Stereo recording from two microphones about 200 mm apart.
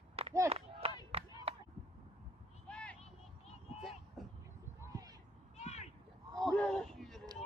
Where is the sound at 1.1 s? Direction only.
30° right (ahead or behind).